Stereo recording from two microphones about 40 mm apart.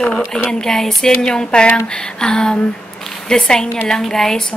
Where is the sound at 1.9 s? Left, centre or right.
Centre.